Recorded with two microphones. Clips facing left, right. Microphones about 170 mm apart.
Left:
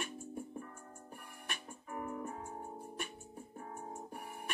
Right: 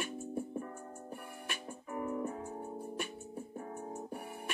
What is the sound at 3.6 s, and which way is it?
Music, 40° right (ahead or behind).